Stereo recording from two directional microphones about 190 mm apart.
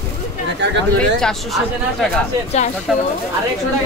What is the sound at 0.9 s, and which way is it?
Speech, 5° left (ahead or behind).